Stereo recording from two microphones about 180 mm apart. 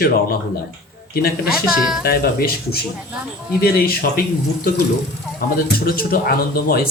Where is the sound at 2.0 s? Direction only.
55° left (ahead or behind).